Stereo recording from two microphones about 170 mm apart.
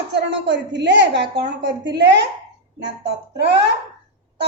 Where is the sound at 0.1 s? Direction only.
90° right.